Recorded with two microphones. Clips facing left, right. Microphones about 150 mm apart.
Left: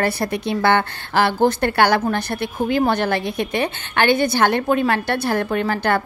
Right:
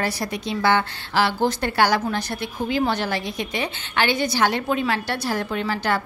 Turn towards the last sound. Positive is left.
turn(degrees=55)  # may be behind; listen again after turning